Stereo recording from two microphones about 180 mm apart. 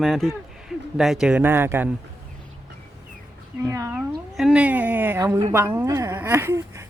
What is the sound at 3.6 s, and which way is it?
Speech, 15° right (ahead or behind).